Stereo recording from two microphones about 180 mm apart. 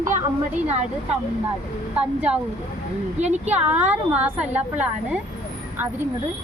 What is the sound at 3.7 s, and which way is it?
A woman's voice, 10° right (ahead or behind).